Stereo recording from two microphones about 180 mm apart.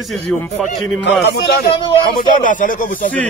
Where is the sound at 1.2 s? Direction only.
70° left (ahead or behind).